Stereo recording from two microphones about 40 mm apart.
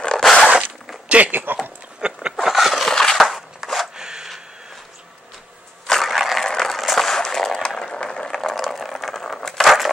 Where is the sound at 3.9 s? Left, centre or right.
Centre.